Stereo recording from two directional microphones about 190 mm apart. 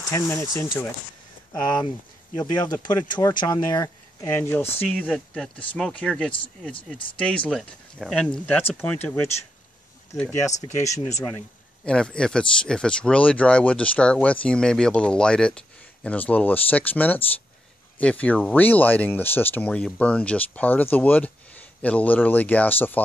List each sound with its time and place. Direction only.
0.1 s speech: 15° left (ahead or behind)
11.8 s speech: 5° left (ahead or behind)